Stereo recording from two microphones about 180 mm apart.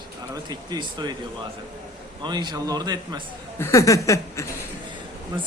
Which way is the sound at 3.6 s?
15° left (ahead or behind).